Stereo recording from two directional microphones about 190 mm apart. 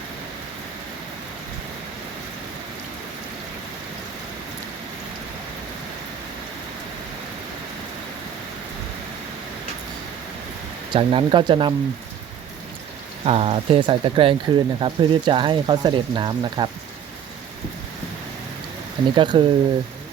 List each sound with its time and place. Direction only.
10.9 s speech: 25° right (ahead or behind)
13.2 s speech: 30° right (ahead or behind)
19.1 s speech: 25° right (ahead or behind)